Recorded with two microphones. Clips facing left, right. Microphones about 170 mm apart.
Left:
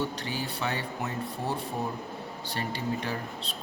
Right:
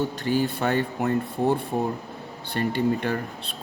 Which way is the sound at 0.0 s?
50° right (ahead or behind).